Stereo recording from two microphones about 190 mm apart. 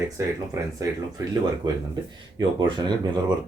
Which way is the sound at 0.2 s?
15° right (ahead or behind).